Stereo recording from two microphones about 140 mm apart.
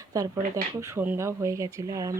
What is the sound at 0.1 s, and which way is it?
Speech, 25° right (ahead or behind).